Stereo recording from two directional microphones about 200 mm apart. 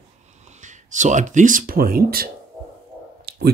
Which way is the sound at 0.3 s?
35° right (ahead or behind).